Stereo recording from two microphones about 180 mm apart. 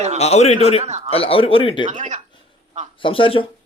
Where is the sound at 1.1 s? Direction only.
30° left (ahead or behind).